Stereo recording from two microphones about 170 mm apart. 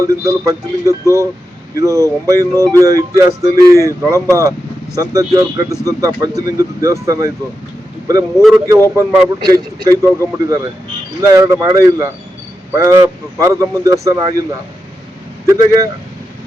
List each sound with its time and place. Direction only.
0.3 s speech: 20° right (ahead or behind)
8.4 s speech: centre (ahead or behind)
9.0 s speech: 20° right (ahead or behind)
15.4 s speech: 20° right (ahead or behind)